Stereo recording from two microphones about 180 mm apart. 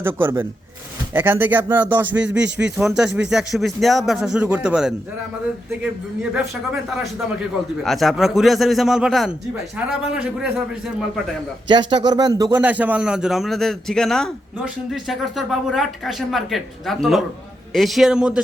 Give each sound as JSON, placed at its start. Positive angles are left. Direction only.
{"t": 0.0, "sound": "a man's voice", "side_deg": -10}
{"t": 7.9, "sound": "a man's voice", "side_deg": 0}
{"t": 11.9, "sound": "a man's voice", "side_deg": -25}